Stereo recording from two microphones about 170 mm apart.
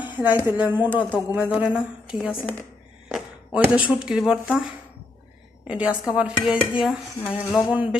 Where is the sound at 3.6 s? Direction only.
5° right (ahead or behind).